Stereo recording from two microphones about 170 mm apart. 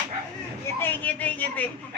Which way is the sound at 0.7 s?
10° left (ahead or behind).